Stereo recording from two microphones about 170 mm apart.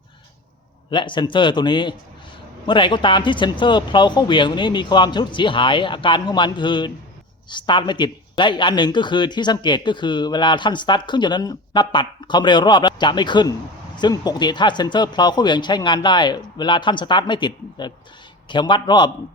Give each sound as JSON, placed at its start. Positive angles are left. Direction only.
{"t": 0.9, "sound": "speech", "side_deg": 30}